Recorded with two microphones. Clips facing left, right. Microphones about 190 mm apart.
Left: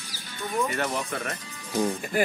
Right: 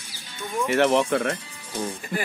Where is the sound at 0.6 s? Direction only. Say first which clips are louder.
Right 9 dB; 75° right (ahead or behind); by 1.4 s 55° right (ahead or behind).